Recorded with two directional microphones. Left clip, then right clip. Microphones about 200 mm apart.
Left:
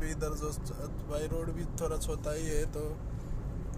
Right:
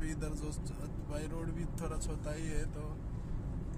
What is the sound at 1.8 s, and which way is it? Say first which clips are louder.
Speech: left 11 dB; centre (ahead or behind).